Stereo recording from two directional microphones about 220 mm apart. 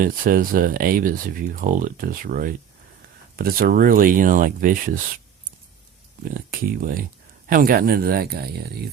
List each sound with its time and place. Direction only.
0.0 s speech: 40° right (ahead or behind)
6.3 s speech: 40° right (ahead or behind)